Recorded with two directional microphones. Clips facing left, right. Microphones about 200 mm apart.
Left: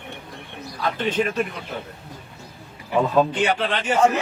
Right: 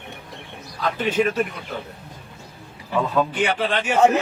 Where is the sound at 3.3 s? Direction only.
10° right (ahead or behind).